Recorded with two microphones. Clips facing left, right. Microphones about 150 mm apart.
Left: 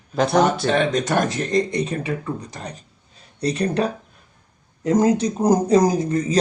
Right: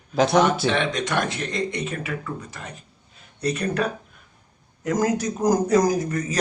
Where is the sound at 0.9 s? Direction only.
45° left (ahead or behind).